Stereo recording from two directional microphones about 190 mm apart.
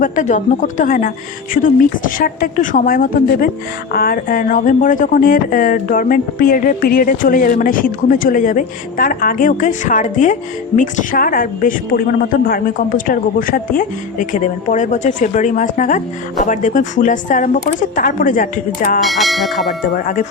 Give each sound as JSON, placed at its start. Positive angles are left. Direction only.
{"t": 0.0, "sound": "speech", "side_deg": 40}
{"t": 19.0, "sound": "speech", "side_deg": 0}
{"t": 19.9, "sound": "speech", "side_deg": 45}